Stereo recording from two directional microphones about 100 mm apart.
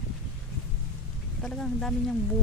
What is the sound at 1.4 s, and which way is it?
Speech, 5° left (ahead or behind).